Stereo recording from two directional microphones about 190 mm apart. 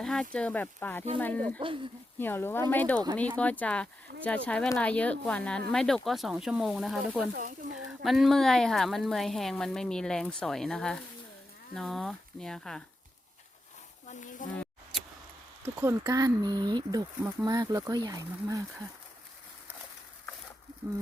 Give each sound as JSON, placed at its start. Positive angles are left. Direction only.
{"t": 0.0, "sound": "a woman's voice", "side_deg": 0}
{"t": 1.6, "sound": "speech", "side_deg": -25}
{"t": 2.1, "sound": "a woman's voice", "side_deg": 10}
{"t": 14.1, "sound": "speech", "side_deg": 40}
{"t": 15.6, "sound": "speech", "side_deg": -10}